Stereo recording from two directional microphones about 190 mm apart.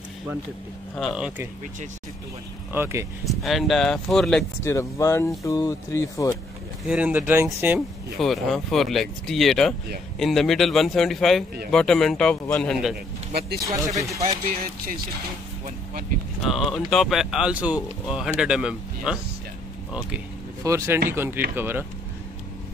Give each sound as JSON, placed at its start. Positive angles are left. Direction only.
{"t": 0.9, "sound": "speech", "side_deg": 0}
{"t": 2.7, "sound": "speech", "side_deg": -15}
{"t": 3.3, "sound": "speech", "side_deg": 0}
{"t": 4.6, "sound": "speech", "side_deg": 15}
{"t": 6.9, "sound": "speech", "side_deg": -10}
{"t": 8.2, "sound": "speech", "side_deg": 0}
{"t": 12.9, "sound": "speech", "side_deg": -55}
{"t": 16.4, "sound": "speech", "side_deg": 0}